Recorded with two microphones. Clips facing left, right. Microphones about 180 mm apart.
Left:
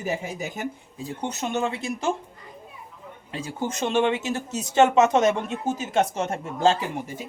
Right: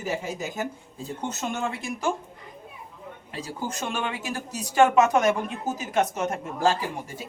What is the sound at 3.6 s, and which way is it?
Speech, 25° left (ahead or behind).